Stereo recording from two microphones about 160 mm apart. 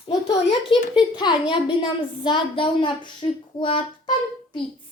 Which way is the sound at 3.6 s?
30° left (ahead or behind).